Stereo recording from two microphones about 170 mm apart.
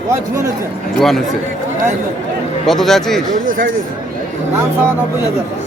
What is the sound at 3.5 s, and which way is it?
Speech, 50° right (ahead or behind).